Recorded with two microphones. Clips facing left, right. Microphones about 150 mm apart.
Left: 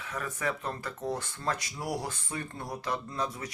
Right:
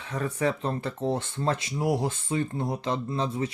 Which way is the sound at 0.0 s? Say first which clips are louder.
Right 7 dB; 30° right (ahead or behind).